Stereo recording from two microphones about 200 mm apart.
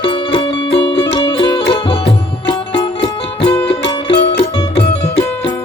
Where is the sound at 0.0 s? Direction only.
25° left (ahead or behind).